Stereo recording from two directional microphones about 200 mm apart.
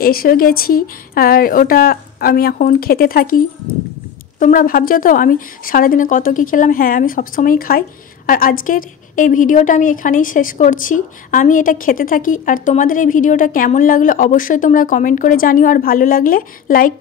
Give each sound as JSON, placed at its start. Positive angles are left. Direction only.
{"t": 0.0, "sound": "a woman's voice", "side_deg": 45}